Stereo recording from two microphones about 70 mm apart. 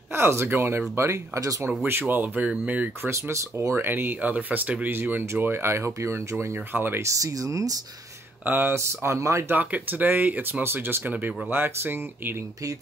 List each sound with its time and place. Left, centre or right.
0.1 s speech: right
1.9 s speech: right
3.1 s speech: right
7.0 s speech: right
8.5 s speech: right
9.5 s speech: right